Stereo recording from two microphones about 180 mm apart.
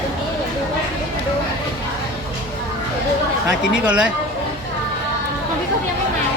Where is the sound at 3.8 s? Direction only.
5° right (ahead or behind).